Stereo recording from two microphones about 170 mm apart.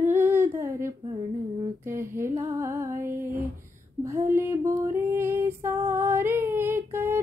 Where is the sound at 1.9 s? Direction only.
15° right (ahead or behind).